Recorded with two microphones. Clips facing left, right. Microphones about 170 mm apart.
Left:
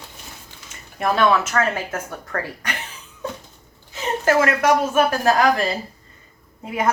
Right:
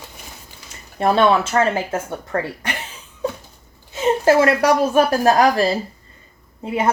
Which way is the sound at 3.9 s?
30° right (ahead or behind).